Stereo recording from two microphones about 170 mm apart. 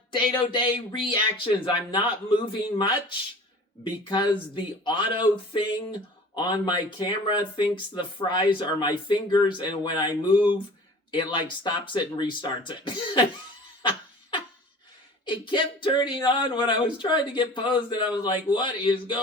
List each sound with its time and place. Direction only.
0.1 s speech: 30° left (ahead or behind)
13.8 s a sound: 30° left (ahead or behind)
15.3 s speech: 30° left (ahead or behind)